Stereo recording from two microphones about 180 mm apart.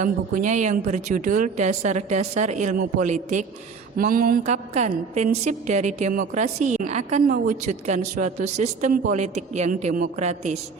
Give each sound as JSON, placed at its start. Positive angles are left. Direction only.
{"t": 0.0, "sound": "a man's voice", "side_deg": -45}
{"t": 4.4, "sound": "speech", "side_deg": -40}